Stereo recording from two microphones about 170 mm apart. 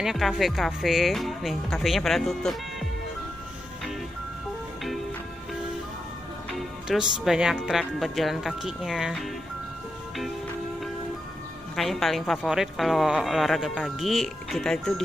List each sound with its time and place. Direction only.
0.0 s a woman's voice: centre (ahead or behind)
6.9 s a woman's voice: 5° right (ahead or behind)
11.7 s a woman's voice: centre (ahead or behind)